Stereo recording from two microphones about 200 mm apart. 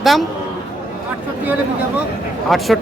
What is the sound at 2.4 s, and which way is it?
Speech, centre (ahead or behind).